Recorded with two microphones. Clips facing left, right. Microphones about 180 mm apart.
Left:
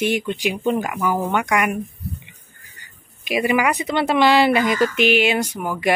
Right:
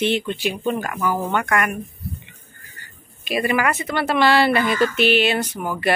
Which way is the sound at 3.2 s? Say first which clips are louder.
Left 2 dB; 15° left (ahead or behind).